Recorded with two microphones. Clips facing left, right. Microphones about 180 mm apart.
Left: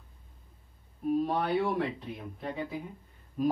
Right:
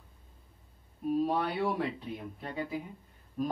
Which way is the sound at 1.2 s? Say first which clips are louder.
Left 1 dB; centre (ahead or behind).